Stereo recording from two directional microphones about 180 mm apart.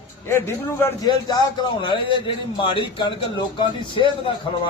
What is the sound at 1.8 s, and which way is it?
A man's voice, 25° left (ahead or behind).